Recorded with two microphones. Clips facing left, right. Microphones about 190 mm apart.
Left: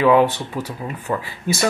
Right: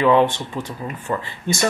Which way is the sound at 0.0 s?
5° left (ahead or behind).